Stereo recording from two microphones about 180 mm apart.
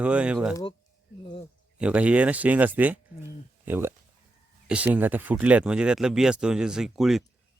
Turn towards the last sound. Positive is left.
turn(degrees=0)  # may be behind; listen again after turning